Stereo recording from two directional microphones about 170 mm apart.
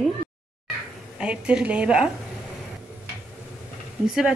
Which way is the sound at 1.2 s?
5° right (ahead or behind).